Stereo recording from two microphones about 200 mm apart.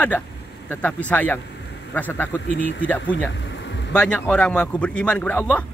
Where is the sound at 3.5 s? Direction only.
65° left (ahead or behind).